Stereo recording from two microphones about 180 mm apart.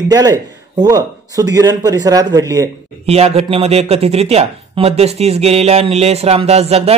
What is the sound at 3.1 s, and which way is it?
Speech, 35° right (ahead or behind).